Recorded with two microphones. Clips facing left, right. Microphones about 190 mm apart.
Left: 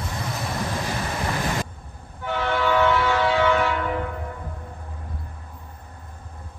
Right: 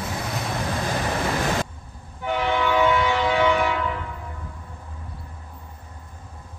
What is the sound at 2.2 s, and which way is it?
Train, 15° right (ahead or behind).